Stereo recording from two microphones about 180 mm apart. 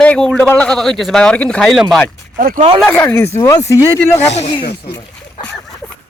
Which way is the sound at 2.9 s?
10° left (ahead or behind).